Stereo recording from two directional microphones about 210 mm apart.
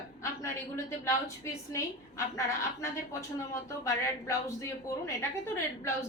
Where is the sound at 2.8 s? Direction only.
15° left (ahead or behind).